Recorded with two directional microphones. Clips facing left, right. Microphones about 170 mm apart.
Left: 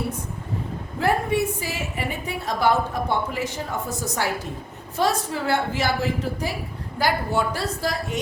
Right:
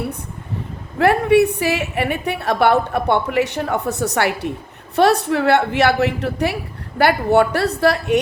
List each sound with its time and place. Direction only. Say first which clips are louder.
0.9 s a woman's voice: right 9 dB; 70° right (ahead or behind)